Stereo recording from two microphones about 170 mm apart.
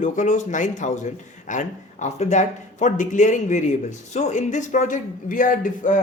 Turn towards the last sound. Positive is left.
turn(degrees=50)  # may be behind; listen again after turning